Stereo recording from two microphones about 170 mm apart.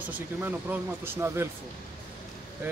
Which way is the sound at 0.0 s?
10° right (ahead or behind).